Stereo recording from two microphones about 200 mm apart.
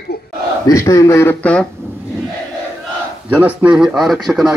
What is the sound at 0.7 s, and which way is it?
Speech, 15° left (ahead or behind).